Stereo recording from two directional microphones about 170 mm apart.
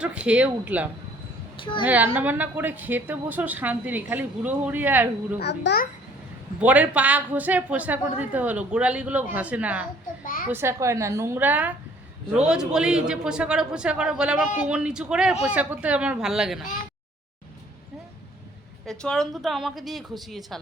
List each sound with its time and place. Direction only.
0.0 s a woman's voice: 5° right (ahead or behind)
1.5 s a woman's voice: 30° left (ahead or behind)
1.8 s a woman's voice: 10° right (ahead or behind)
5.4 s a child's voice: 75° left (ahead or behind)
6.6 s a woman's voice: 10° right (ahead or behind)
18.9 s speech: 5° left (ahead or behind)